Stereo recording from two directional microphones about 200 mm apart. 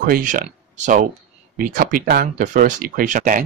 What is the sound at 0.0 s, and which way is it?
Speech, 45° right (ahead or behind).